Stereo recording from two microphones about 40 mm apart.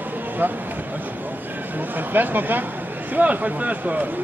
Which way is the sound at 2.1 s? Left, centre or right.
Right.